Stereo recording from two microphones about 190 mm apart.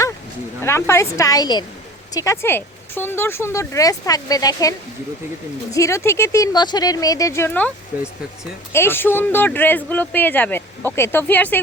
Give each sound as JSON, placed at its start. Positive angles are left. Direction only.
{"t": 0.6, "sound": "speech", "side_deg": 15}
{"t": 5.7, "sound": "speech", "side_deg": 15}